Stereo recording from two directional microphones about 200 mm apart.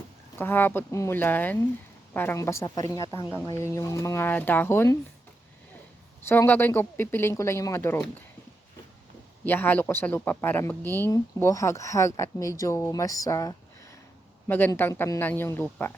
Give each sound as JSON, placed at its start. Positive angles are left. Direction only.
{"t": 0.3, "sound": "speech", "side_deg": 10}
{"t": 6.2, "sound": "speech", "side_deg": 10}
{"t": 9.4, "sound": "speech", "side_deg": 10}